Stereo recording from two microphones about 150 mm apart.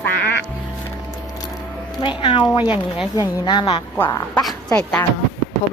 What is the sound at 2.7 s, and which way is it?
Speech, 5° right (ahead or behind).